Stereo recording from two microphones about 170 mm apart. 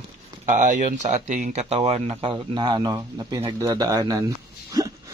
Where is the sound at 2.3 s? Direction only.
25° right (ahead or behind).